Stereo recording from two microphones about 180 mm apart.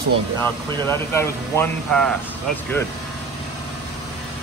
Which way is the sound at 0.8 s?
15° left (ahead or behind).